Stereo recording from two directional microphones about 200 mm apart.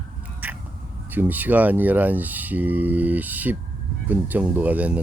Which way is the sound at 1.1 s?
10° right (ahead or behind).